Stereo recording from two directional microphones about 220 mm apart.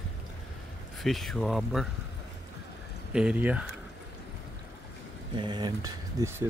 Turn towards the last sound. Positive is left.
turn(degrees=-20)  # may be behind; listen again after turning